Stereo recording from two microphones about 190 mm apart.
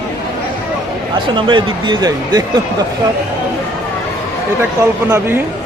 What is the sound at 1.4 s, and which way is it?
Speech, 25° right (ahead or behind).